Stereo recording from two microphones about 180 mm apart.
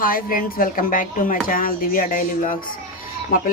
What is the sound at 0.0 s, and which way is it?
Speech, 50° left (ahead or behind).